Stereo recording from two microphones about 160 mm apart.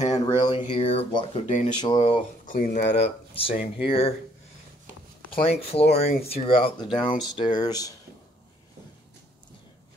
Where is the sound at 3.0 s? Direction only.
35° left (ahead or behind).